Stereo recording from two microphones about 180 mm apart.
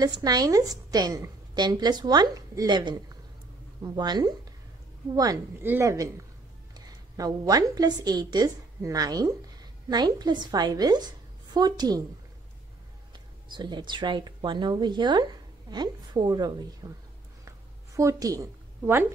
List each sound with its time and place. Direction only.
0.0 s a woman's voice: 20° right (ahead or behind)
13.1 s speech: 25° right (ahead or behind)
17.5 s a sound: 15° right (ahead or behind)